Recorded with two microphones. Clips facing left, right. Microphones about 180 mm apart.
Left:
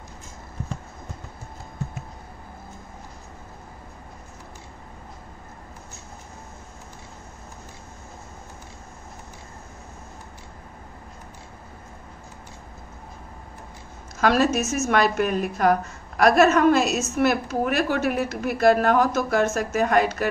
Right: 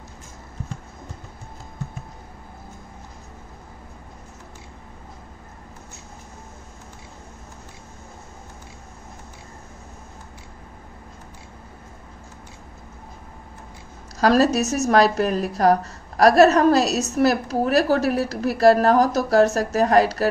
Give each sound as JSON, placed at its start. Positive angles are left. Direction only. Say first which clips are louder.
{"t": 14.2, "sound": "a woman's voice", "louder": "right 3 dB", "side_deg": -35}